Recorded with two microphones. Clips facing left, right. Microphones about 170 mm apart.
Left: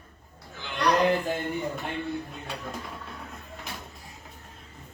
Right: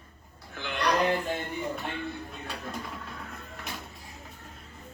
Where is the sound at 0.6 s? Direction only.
60° right (ahead or behind).